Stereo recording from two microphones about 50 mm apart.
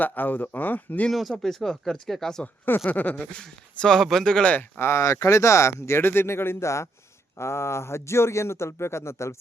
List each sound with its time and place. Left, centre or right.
0.0 s speech: left
1.1 s speech: centre
2.6 s speech: left
3.2 s speech: centre
4.8 s speech: left
6.0 s a man's voice: left